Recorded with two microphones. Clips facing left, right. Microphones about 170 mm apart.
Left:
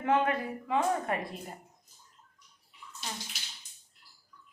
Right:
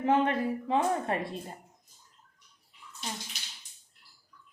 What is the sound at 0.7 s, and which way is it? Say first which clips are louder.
Speech: even; 30° right (ahead or behind).